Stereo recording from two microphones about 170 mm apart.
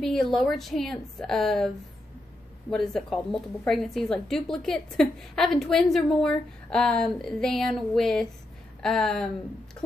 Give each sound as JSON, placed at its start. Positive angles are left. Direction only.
{"t": 0.0, "sound": "a woman's voice", "side_deg": 0}
{"t": 2.7, "sound": "a woman's voice", "side_deg": 0}